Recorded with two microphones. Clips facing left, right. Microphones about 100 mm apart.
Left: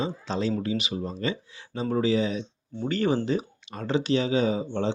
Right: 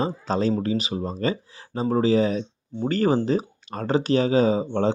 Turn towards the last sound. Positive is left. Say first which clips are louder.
# right 5 dB
turn(degrees=-40)  # may be behind; listen again after turning